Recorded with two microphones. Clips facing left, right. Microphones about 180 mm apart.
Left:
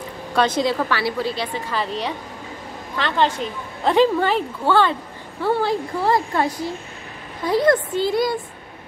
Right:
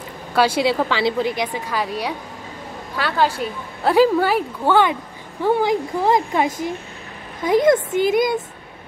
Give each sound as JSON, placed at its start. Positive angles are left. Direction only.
{"t": 0.3, "sound": "a woman's voice", "side_deg": -10}
{"t": 0.7, "sound": "a woman's voice", "side_deg": -20}